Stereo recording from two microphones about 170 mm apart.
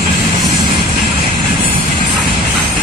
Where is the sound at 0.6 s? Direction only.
30° right (ahead or behind).